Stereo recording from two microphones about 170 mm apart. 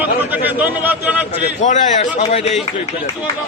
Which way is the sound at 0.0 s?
10° right (ahead or behind).